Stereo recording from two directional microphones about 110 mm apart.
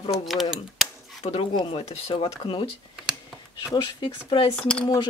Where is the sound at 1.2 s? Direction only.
70° left (ahead or behind).